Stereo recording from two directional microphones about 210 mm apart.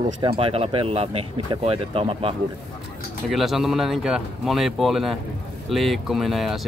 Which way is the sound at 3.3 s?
Centre (ahead or behind).